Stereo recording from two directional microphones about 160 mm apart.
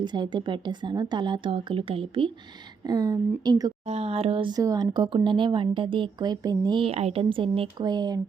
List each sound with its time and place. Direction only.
0.0 s a woman's voice: 30° right (ahead or behind)
3.8 s speech: 40° right (ahead or behind); by 8.2 s 25° right (ahead or behind)